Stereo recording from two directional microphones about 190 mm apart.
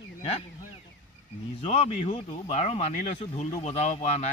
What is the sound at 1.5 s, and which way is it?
Speech, 30° left (ahead or behind).